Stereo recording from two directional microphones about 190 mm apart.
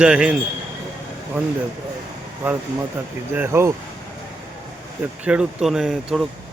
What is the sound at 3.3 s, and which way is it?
Speech, 15° right (ahead or behind).